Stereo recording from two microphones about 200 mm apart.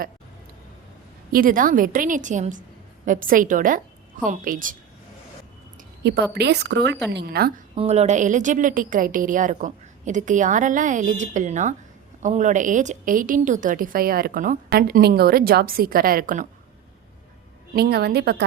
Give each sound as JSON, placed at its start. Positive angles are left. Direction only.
{"t": 1.3, "sound": "a woman's voice", "side_deg": -45}
{"t": 6.0, "sound": "a woman's voice", "side_deg": -55}
{"t": 7.8, "sound": "a woman's voice", "side_deg": -35}
{"t": 17.7, "sound": "a woman's voice", "side_deg": -50}